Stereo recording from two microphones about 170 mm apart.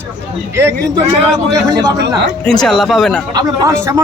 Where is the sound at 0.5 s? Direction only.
15° right (ahead or behind).